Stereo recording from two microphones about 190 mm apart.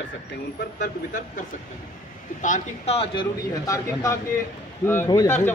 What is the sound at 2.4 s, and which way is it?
Speech, 35° left (ahead or behind).